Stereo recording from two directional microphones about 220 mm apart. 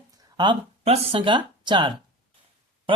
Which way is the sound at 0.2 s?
20° right (ahead or behind).